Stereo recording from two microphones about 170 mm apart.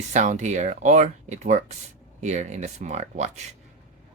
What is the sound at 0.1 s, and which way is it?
Speech, 45° right (ahead or behind).